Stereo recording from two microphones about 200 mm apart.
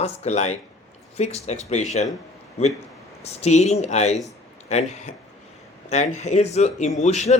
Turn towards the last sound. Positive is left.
turn(degrees=35)  # may be behind; listen again after turning